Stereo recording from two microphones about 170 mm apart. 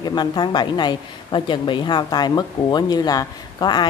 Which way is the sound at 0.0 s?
25° left (ahead or behind).